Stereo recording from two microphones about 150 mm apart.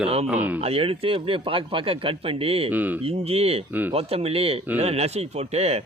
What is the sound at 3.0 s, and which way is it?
Speech, 40° right (ahead or behind).